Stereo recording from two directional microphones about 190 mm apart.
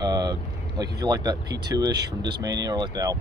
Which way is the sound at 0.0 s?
20° right (ahead or behind).